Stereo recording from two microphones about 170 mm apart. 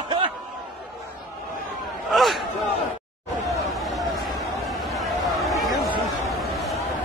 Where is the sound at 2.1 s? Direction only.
Centre (ahead or behind).